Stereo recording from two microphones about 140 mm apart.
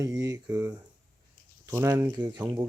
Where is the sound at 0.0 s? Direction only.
25° right (ahead or behind).